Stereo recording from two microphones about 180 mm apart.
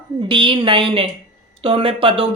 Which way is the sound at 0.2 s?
25° right (ahead or behind).